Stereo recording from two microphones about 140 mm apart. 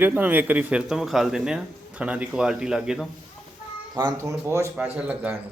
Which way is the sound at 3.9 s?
25° right (ahead or behind).